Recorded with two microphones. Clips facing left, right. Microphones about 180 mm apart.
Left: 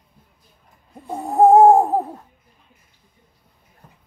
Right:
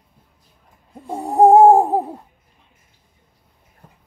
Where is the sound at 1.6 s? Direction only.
15° right (ahead or behind).